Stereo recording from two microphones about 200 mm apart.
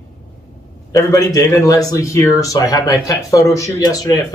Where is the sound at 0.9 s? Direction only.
15° left (ahead or behind).